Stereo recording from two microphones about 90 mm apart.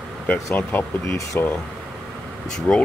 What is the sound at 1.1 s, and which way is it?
Speech, 30° left (ahead or behind).